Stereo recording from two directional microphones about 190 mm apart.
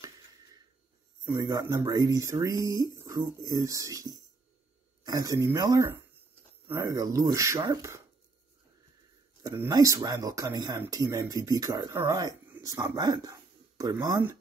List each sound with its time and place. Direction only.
1.3 s speech: 20° right (ahead or behind)
9.4 s speech: 15° right (ahead or behind)